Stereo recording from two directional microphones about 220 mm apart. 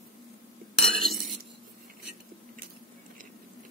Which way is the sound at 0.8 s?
Centre (ahead or behind).